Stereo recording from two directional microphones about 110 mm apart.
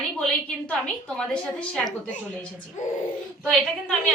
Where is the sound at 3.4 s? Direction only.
10° left (ahead or behind).